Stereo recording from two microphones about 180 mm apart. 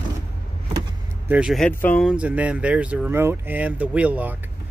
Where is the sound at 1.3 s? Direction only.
Centre (ahead or behind).